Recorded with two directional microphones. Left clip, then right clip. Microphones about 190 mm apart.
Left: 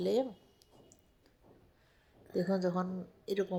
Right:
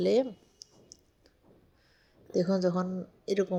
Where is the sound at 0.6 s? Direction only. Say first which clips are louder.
Right 12 dB; 20° right (ahead or behind).